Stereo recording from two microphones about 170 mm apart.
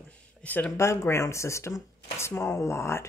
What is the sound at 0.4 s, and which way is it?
A woman's voice, 10° left (ahead or behind).